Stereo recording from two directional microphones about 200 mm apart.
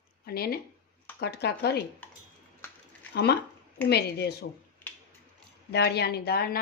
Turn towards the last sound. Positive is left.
turn(degrees=50)  # may be behind; listen again after turning